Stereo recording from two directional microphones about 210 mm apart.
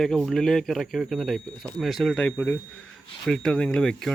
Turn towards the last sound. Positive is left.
turn(degrees=5)  # may be behind; listen again after turning